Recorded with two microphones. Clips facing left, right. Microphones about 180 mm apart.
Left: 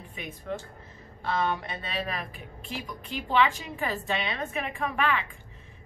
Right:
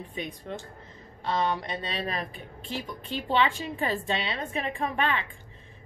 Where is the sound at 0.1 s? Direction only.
25° right (ahead or behind).